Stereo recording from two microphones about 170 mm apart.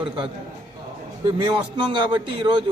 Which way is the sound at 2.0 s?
30° right (ahead or behind).